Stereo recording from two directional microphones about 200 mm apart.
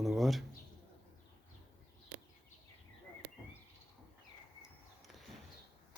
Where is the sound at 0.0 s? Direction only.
Centre (ahead or behind).